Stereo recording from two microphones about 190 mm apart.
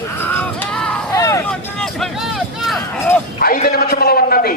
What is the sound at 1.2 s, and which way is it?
Vehicle, 15° left (ahead or behind).